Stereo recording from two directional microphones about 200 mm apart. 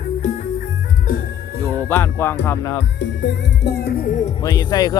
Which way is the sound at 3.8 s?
45° left (ahead or behind).